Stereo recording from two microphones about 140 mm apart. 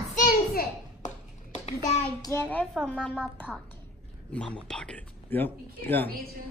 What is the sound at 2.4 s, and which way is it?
Speech, 10° left (ahead or behind).